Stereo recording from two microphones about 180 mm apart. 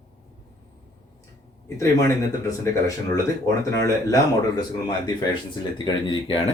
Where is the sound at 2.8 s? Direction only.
20° left (ahead or behind).